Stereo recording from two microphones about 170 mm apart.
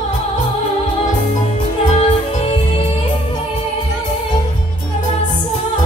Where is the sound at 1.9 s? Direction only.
35° left (ahead or behind).